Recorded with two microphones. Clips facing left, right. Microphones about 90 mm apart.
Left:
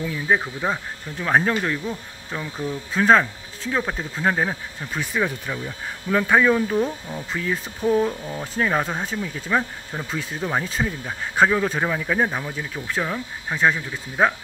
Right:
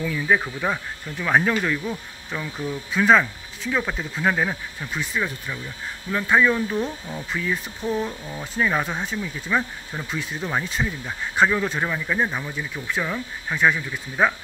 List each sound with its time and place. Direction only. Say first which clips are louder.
0.0 s speech: even; 25° left (ahead or behind)
2.9 s speech: left 1 dB; 35° left (ahead or behind)
5.0 s speech: left 4 dB; 50° left (ahead or behind)
6.8 s speech: left 3 dB; 5° left (ahead or behind)
8.5 s speech: left 1 dB; 40° left (ahead or behind)
12.3 s speech: left 1 dB; 35° left (ahead or behind)